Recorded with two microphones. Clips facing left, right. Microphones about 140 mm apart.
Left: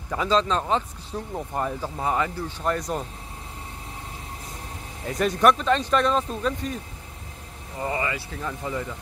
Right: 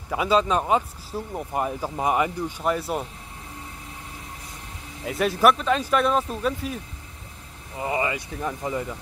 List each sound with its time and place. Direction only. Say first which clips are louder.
0.1 s speech: right 1 dB; 10° right (ahead or behind)
5.0 s speech: even; 5° right (ahead or behind)
7.8 s speech: right 2 dB; 20° right (ahead or behind)